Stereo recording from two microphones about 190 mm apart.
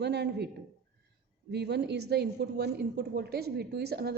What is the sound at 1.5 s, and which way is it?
A woman's voice, 60° right (ahead or behind).